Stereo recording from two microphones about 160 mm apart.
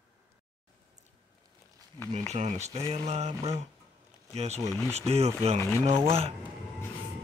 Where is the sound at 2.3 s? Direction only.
45° right (ahead or behind).